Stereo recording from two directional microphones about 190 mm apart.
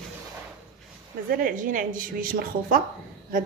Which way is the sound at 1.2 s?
50° right (ahead or behind).